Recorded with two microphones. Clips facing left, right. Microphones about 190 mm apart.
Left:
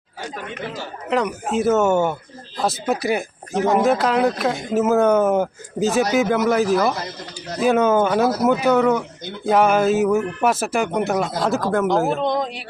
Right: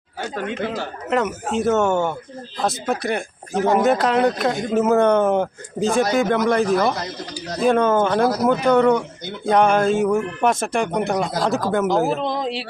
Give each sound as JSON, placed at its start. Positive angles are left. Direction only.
{"t": 1.1, "sound": "speech", "side_deg": 0}